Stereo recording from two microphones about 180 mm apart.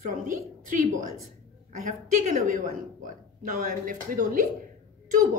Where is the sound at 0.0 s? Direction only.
45° right (ahead or behind).